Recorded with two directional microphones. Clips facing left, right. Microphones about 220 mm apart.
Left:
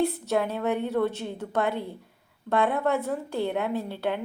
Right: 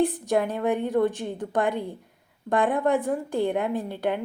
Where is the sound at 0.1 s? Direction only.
15° right (ahead or behind).